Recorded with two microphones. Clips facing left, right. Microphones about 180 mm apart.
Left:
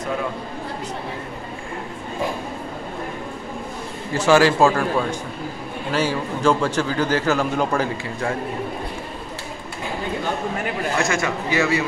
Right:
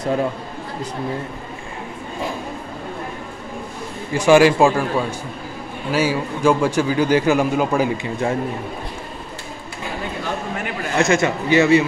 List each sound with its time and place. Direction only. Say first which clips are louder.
4.1 s a man's voice: right 3 dB; 15° right (ahead or behind)
5.9 s a man's voice: right 3 dB; 10° right (ahead or behind)
11.0 s speech: right 8 dB; 20° right (ahead or behind)